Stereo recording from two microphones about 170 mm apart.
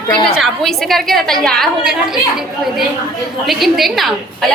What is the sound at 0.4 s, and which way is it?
A woman's voice, centre (ahead or behind).